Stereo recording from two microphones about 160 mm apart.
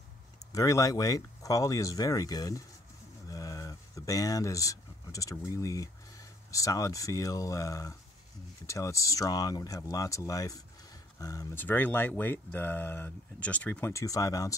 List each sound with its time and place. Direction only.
0.5 s speech: 20° left (ahead or behind)
11.6 s speech: 10° left (ahead or behind)